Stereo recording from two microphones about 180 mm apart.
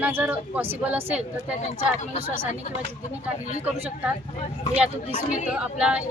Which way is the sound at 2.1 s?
35° right (ahead or behind).